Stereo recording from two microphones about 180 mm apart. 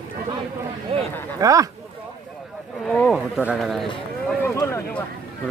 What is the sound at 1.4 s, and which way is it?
Speech, 20° right (ahead or behind).